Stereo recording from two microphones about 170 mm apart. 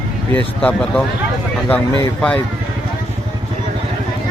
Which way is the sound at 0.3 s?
5° left (ahead or behind).